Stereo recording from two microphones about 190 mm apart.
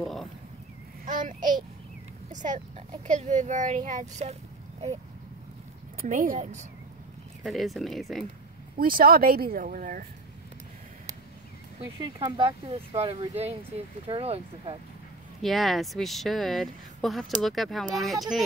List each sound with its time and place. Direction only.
0.0 s a sound: centre (ahead or behind)
1.0 s a sound: 45° right (ahead or behind)
3.1 s speech: 40° right (ahead or behind)
5.9 s speech: 45° right (ahead or behind)
7.4 s speech: centre (ahead or behind)
8.7 s speech: 50° right (ahead or behind)
11.8 s speech: 20° right (ahead or behind)
15.4 s speech: centre (ahead or behind)